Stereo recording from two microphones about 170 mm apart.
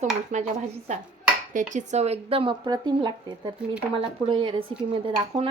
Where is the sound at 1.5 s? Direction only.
50° right (ahead or behind); by 5.5 s 30° right (ahead or behind).